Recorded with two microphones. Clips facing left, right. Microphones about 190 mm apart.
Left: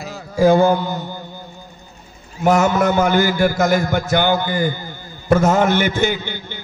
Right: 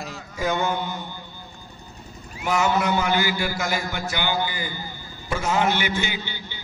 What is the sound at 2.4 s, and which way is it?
A man's voice, 45° left (ahead or behind).